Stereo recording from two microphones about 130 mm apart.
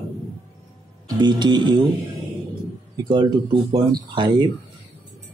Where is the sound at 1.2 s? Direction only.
35° right (ahead or behind).